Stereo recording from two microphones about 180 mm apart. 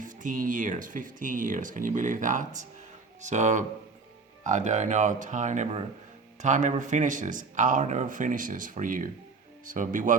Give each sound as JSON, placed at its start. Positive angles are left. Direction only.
{"t": 0.0, "sound": "speech", "side_deg": -45}